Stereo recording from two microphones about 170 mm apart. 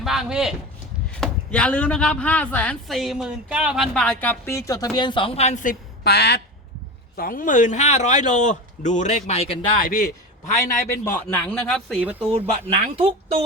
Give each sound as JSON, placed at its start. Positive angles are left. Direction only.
{"t": 0.0, "sound": "speech", "side_deg": 0}
{"t": 6.1, "sound": "speech", "side_deg": 75}
{"t": 7.2, "sound": "a man's voice", "side_deg": 55}
{"t": 9.8, "sound": "a man's voice", "side_deg": 60}
{"t": 10.9, "sound": "speech", "side_deg": 15}
{"t": 11.7, "sound": "speech", "side_deg": 5}
{"t": 12.3, "sound": "speech", "side_deg": -35}